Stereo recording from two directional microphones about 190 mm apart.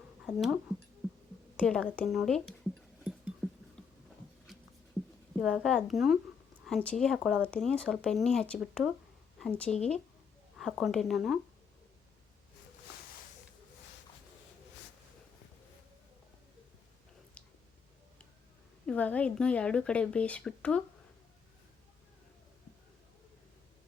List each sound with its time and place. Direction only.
0.3 s speech: centre (ahead or behind)
3.0 s music: 5° right (ahead or behind)
3.8 s a sound: 5° left (ahead or behind)
5.4 s speech: centre (ahead or behind)
18.9 s speech: 10° left (ahead or behind)